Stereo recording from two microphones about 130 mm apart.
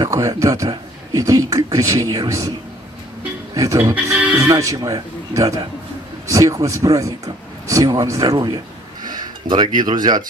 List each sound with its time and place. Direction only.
0.0 s speech: 25° right (ahead or behind)
3.5 s speech: 25° right (ahead or behind)
3.9 s speech: 10° right (ahead or behind)
4.5 s speech: 25° right (ahead or behind)
9.0 s a sound: 30° right (ahead or behind)
9.8 s speech: 30° right (ahead or behind)